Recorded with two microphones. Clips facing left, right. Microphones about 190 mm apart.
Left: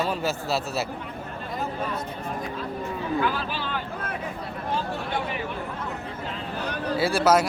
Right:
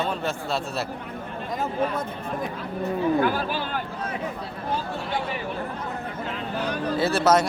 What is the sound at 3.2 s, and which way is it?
Speech, 45° right (ahead or behind).